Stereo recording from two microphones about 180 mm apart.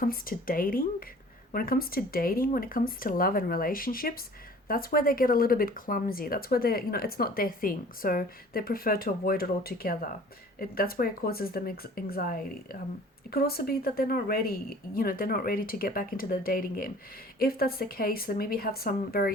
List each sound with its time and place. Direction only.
0.0 s speech: 50° left (ahead or behind)